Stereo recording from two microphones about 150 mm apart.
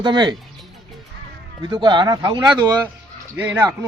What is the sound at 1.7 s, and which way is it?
Speech, 30° right (ahead or behind).